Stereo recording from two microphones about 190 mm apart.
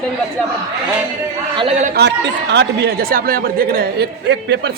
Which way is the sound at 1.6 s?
35° right (ahead or behind).